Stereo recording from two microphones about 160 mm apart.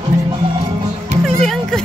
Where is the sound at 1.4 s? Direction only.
5° left (ahead or behind).